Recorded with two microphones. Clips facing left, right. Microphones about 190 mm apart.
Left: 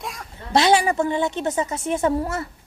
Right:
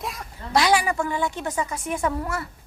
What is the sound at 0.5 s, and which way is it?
A woman's voice, 25° left (ahead or behind).